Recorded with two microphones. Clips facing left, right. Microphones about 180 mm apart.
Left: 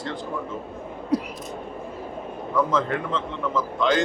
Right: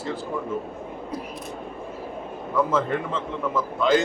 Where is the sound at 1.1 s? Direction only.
75° left (ahead or behind).